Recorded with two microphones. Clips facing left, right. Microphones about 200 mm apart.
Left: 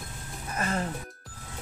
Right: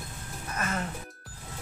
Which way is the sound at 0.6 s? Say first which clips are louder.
Left 2 dB; 30° left (ahead or behind).